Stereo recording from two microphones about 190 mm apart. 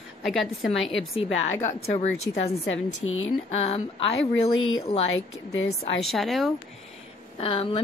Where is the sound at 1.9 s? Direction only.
35° left (ahead or behind).